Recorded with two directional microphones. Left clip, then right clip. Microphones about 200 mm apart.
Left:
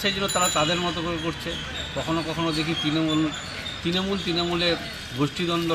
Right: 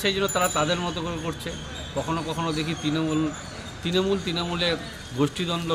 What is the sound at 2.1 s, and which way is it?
A man's voice, 20° right (ahead or behind).